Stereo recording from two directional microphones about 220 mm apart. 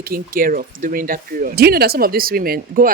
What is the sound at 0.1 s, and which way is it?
Speech, 40° right (ahead or behind).